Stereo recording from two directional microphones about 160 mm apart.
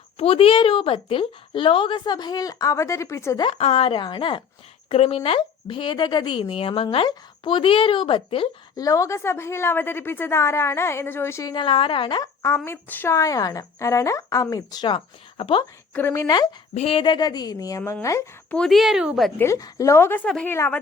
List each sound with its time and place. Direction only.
0.2 s speech: 35° left (ahead or behind); by 3.4 s 20° left (ahead or behind)
3.4 s speech: 35° left (ahead or behind)
8.7 s a woman's voice: 20° left (ahead or behind)
11.5 s a woman's voice: 30° left (ahead or behind)
15.9 s a woman's voice: 15° left (ahead or behind)
16.7 s a woman's voice: 35° left (ahead or behind); by 17.9 s 20° left (ahead or behind)
18.5 s speech: 5° left (ahead or behind)
19.4 s a woman's voice: 20° left (ahead or behind)